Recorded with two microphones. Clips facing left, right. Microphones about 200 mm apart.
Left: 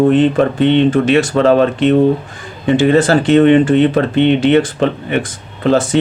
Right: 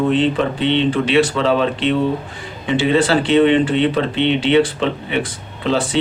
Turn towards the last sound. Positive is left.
turn(degrees=50)  # may be behind; listen again after turning